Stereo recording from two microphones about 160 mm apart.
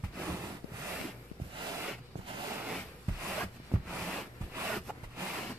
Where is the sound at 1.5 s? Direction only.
25° right (ahead or behind).